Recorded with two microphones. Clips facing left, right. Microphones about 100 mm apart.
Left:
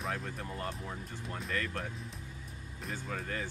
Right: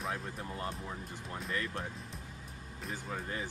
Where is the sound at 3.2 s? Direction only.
15° right (ahead or behind).